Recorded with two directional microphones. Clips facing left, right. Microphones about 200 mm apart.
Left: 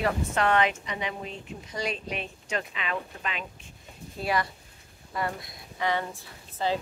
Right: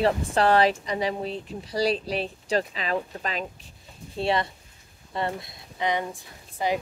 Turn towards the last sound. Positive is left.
turn(degrees=-15)  # may be behind; listen again after turning